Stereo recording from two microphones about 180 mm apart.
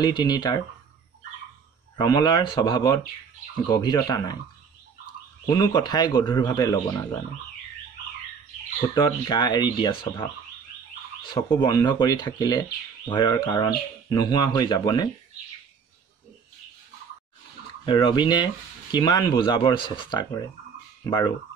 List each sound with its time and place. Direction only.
0.0 s speech: 20° left (ahead or behind)
2.0 s speech: 20° left (ahead or behind)
5.5 s speech: 25° left (ahead or behind)
8.9 s speech: 25° left (ahead or behind)
11.4 s speech: 20° left (ahead or behind)
17.8 s speech: 25° left (ahead or behind)